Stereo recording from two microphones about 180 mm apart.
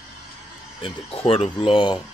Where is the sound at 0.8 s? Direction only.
30° left (ahead or behind).